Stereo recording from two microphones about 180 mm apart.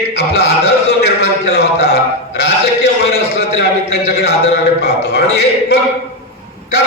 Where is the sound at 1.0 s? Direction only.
65° left (ahead or behind).